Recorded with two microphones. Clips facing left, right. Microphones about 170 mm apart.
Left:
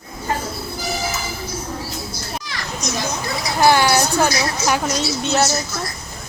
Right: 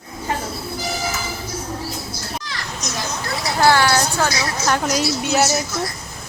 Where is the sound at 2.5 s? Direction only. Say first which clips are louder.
Left 3 dB; 15° left (ahead or behind).